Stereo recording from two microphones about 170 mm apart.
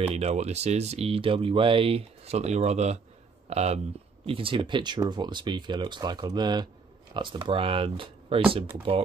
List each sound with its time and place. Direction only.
0.1 s speech: 40° right (ahead or behind)